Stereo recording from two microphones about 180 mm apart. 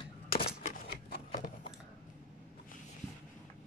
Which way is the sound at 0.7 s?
60° left (ahead or behind).